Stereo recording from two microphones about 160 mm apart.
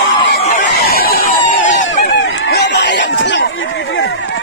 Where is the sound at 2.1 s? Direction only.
90° left.